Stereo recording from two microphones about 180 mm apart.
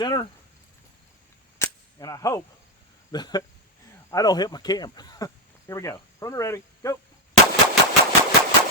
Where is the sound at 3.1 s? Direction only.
25° left (ahead or behind).